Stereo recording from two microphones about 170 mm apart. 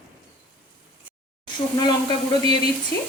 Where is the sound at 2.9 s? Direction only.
15° left (ahead or behind).